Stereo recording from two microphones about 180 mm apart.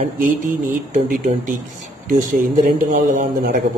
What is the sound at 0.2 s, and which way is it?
A man's voice, 45° right (ahead or behind).